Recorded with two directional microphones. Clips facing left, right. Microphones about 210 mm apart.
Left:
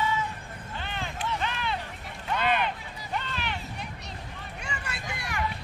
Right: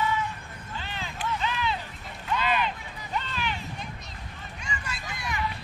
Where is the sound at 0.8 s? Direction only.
55° left (ahead or behind).